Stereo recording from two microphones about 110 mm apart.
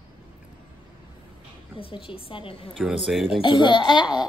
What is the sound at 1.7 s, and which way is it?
Speech, 55° left (ahead or behind).